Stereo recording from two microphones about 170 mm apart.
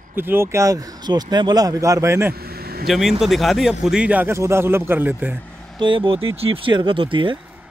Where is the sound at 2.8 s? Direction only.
Centre (ahead or behind).